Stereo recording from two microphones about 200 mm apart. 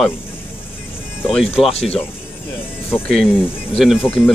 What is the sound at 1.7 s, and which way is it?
Speech, 30° left (ahead or behind).